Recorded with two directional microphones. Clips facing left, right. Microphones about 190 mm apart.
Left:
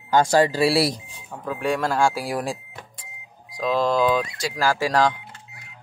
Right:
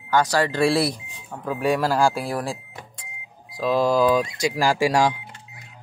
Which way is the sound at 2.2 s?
15° left (ahead or behind).